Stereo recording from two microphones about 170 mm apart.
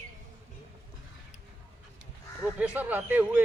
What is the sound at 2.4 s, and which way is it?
Speech, 10° right (ahead or behind).